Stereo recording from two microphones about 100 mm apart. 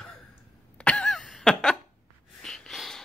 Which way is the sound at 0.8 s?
10° left (ahead or behind).